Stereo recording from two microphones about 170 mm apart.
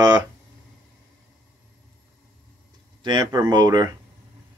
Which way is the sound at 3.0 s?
25° right (ahead or behind).